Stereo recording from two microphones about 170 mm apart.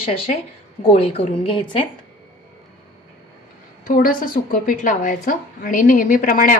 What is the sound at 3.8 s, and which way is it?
A woman's voice, 55° left (ahead or behind).